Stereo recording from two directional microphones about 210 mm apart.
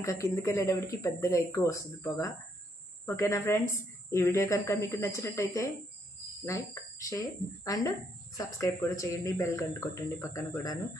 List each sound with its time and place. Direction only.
0.0 s a woman's voice: 15° left (ahead or behind)